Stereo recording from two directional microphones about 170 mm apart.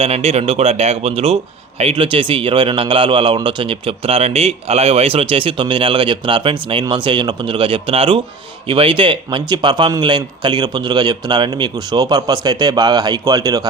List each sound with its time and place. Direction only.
0.0 s a man's voice: 35° right (ahead or behind)